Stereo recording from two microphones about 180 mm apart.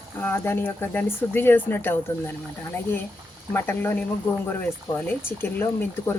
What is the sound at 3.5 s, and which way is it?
Speech, 10° left (ahead or behind).